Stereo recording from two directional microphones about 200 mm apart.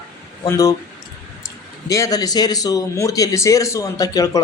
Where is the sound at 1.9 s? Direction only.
15° left (ahead or behind).